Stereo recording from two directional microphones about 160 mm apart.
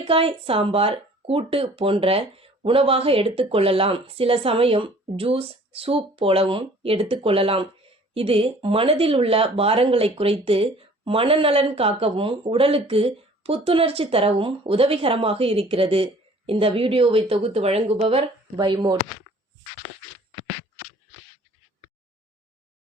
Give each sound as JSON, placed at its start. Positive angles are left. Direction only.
{"t": 0.0, "sound": "speech", "side_deg": -35}
{"t": 18.5, "sound": "speech", "side_deg": -30}